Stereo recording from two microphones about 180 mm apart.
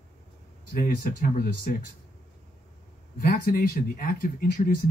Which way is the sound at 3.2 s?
55° left (ahead or behind).